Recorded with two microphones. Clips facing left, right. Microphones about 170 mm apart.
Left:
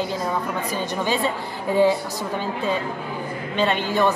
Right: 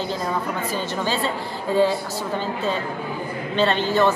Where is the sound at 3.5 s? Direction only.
10° left (ahead or behind).